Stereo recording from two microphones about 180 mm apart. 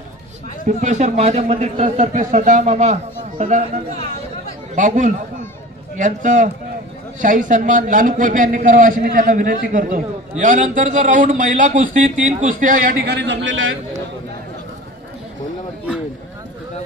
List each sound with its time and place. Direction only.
0.7 s a man's voice: 40° right (ahead or behind); by 13.7 s 90° right